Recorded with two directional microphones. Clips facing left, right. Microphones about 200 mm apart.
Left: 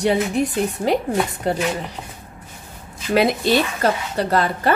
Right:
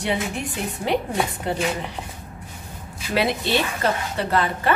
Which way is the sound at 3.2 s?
40° left (ahead or behind).